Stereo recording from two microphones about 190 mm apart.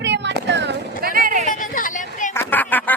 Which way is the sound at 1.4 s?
45° left (ahead or behind).